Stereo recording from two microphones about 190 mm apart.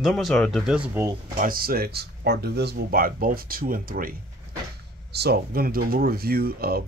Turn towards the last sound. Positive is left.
turn(degrees=-55)  # may be behind; listen again after turning